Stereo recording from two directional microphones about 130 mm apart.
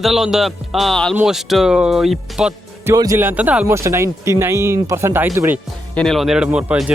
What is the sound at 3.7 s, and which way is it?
Speech, 20° right (ahead or behind).